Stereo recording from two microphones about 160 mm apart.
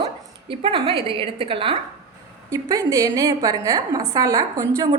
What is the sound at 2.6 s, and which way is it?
A woman's voice, 20° right (ahead or behind).